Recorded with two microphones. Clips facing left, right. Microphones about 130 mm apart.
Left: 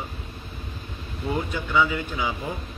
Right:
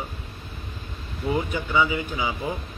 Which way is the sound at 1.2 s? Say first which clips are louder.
Right 2 dB; 10° right (ahead or behind).